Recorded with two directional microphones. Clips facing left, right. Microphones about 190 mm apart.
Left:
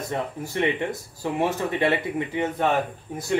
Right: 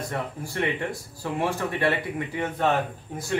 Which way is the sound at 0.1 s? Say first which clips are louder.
Left 3 dB; 20° left (ahead or behind).